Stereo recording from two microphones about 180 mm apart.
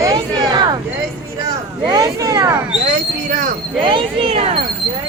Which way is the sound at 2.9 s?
45° right (ahead or behind).